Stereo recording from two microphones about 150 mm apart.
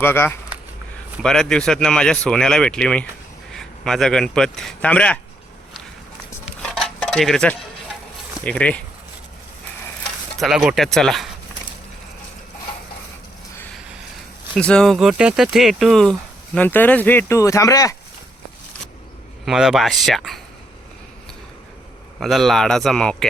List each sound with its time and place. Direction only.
0.0 s speech: 15° left (ahead or behind)
1.2 s speech: 5° left (ahead or behind)
6.6 s cutlery: 5° left (ahead or behind)
8.4 s speech: 10° left (ahead or behind)
10.4 s speech: centre (ahead or behind)
14.5 s speech: 5° left (ahead or behind)
16.6 s speech: 10° left (ahead or behind)
19.5 s speech: 5° right (ahead or behind)
22.2 s speech: centre (ahead or behind)